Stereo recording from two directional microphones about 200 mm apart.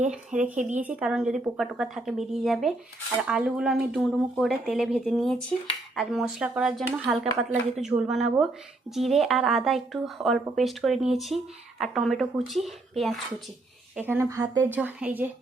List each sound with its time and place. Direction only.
0.5 s speech: 40° right (ahead or behind)
0.8 s speech: 5° right (ahead or behind)
13.9 s a woman's voice: 10° right (ahead or behind)